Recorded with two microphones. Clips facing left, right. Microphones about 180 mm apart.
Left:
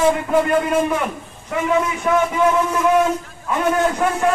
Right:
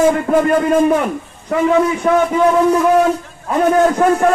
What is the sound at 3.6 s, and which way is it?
Speech, 40° right (ahead or behind).